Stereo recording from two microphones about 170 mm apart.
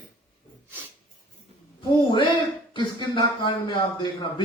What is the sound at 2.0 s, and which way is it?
Speech, 30° left (ahead or behind).